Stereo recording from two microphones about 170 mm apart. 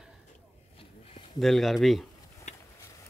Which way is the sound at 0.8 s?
35° left (ahead or behind).